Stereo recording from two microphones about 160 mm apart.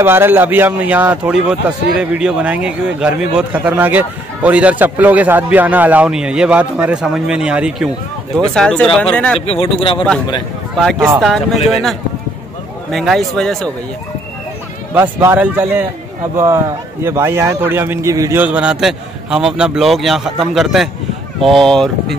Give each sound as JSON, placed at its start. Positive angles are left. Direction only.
{"t": 0.0, "sound": "a man's voice", "side_deg": -15}
{"t": 8.5, "sound": "a man's voice", "side_deg": 5}
{"t": 9.5, "sound": "speech", "side_deg": 35}
{"t": 11.1, "sound": "a man's voice", "side_deg": 0}
{"t": 15.0, "sound": "a man's voice", "side_deg": -10}
{"t": 17.0, "sound": "a man's voice", "side_deg": -15}
{"t": 18.4, "sound": "a man's voice", "side_deg": -10}